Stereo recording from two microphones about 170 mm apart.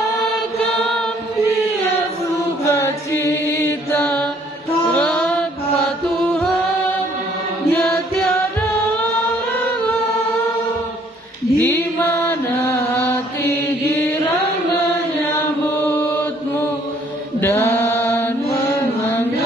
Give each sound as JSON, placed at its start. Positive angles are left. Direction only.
{"t": 2.6, "sound": "chant", "side_deg": 15}
{"t": 4.9, "sound": "music", "side_deg": 5}
{"t": 7.7, "sound": "music", "side_deg": 5}
{"t": 11.5, "sound": "mantra", "side_deg": 15}
{"t": 17.4, "sound": "mantra", "side_deg": 15}